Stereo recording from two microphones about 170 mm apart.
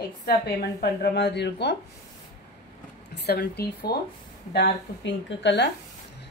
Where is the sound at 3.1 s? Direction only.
70° left (ahead or behind).